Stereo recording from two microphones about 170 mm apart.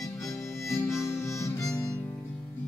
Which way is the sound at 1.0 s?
15° left (ahead or behind).